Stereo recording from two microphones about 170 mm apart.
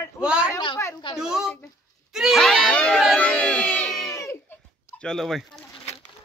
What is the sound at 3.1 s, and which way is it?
Crowd, 5° left (ahead or behind).